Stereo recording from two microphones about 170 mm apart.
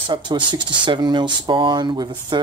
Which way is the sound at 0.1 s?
25° right (ahead or behind).